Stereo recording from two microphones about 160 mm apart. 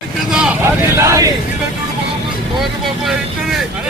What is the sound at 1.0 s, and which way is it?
Vehicle, 20° right (ahead or behind).